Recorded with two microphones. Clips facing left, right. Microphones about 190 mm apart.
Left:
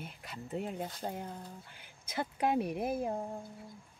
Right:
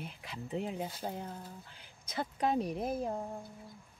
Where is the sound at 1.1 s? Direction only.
5° left (ahead or behind).